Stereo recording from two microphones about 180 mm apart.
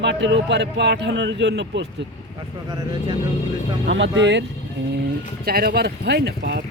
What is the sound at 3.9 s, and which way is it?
Speech, 90° right.